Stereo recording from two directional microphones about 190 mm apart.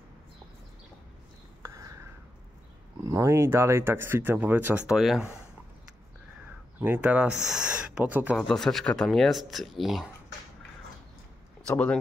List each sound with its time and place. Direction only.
1.6 s whispering: 15° right (ahead or behind)
3.1 s speech: 15° right (ahead or behind)
6.8 s speech: 10° right (ahead or behind)
8.4 s speech: centre (ahead or behind)
11.6 s speech: 5° left (ahead or behind)